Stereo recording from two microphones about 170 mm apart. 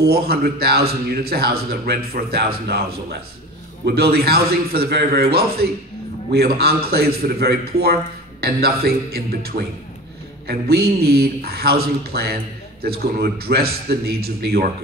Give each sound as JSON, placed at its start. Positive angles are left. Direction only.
{"t": 0.0, "sound": "a man's voice", "side_deg": -65}